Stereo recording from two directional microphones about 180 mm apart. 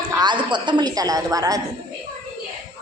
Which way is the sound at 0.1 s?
25° right (ahead or behind).